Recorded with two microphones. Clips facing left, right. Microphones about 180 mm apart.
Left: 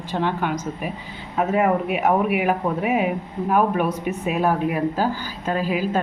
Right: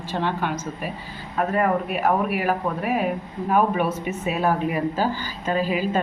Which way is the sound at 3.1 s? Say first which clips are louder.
Left 1 dB; 5° left (ahead or behind).